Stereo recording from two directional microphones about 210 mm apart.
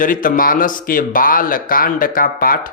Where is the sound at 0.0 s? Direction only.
40° left (ahead or behind).